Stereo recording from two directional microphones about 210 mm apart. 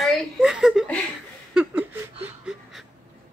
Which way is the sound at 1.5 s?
5° right (ahead or behind).